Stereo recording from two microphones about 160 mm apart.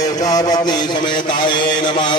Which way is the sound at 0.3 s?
25° left (ahead or behind).